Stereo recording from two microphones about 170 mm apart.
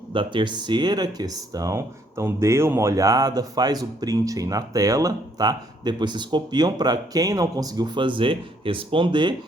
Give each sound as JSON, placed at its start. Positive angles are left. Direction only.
{"t": 0.1, "sound": "speech", "side_deg": -30}